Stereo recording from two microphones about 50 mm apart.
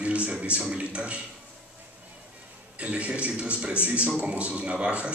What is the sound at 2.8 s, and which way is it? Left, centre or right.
A man's voice, right.